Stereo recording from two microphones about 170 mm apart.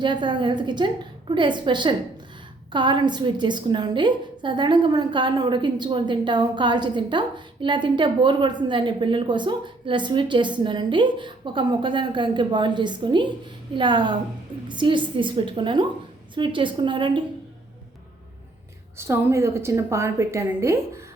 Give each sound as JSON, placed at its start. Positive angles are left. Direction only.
{"t": 0.0, "sound": "a woman's voice", "side_deg": -25}
{"t": 18.9, "sound": "a woman's voice", "side_deg": -15}